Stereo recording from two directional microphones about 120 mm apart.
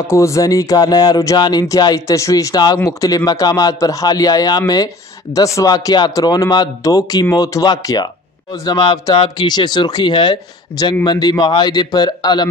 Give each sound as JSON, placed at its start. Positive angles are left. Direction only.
{"t": 0.0, "sound": "speech", "side_deg": 25}